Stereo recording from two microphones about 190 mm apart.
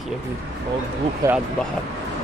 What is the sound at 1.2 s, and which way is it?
Speech, 15° right (ahead or behind).